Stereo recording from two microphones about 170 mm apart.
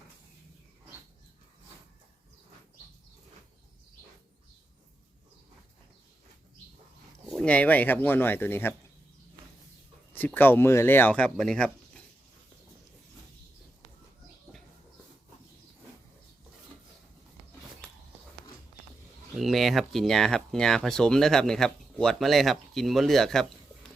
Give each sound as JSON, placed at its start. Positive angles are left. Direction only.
{"t": 7.3, "sound": "speech", "side_deg": 5}
{"t": 10.1, "sound": "speech", "side_deg": 10}
{"t": 19.4, "sound": "speech", "side_deg": 0}